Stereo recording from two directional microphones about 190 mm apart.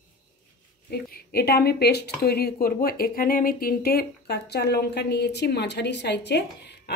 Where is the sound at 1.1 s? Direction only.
55° left (ahead or behind).